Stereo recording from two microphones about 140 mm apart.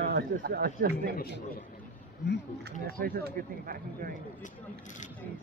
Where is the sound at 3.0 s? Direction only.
90° right.